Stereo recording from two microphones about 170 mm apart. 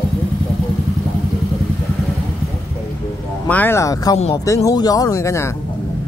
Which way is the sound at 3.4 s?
10° left (ahead or behind).